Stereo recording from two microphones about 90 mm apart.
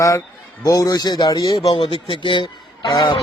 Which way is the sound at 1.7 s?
65° left (ahead or behind).